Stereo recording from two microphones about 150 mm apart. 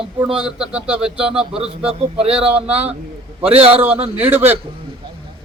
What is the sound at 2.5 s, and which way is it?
Speech, 10° right (ahead or behind).